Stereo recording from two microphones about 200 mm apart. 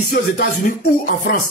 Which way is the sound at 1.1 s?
45° left (ahead or behind).